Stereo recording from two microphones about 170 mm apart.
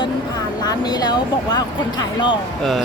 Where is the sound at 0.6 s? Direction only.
25° left (ahead or behind).